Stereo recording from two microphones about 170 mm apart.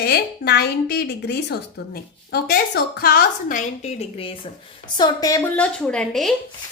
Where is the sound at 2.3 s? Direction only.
65° left (ahead or behind).